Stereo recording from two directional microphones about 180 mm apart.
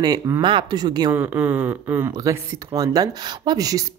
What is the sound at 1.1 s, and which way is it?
Speech, 10° right (ahead or behind).